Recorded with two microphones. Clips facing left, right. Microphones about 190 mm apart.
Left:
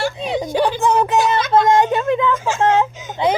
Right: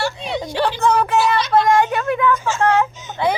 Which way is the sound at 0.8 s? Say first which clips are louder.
Left 1 dB; 20° left (ahead or behind).